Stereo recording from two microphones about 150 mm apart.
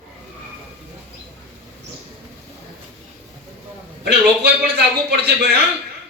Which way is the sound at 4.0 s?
90° right.